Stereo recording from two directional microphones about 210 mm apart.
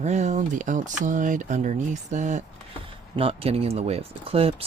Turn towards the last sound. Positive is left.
turn(degrees=-25)  # may be behind; listen again after turning